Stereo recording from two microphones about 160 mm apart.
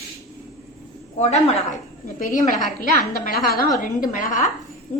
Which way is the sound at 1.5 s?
45° left (ahead or behind).